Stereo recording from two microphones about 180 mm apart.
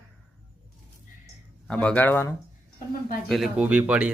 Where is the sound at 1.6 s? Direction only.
5° left (ahead or behind).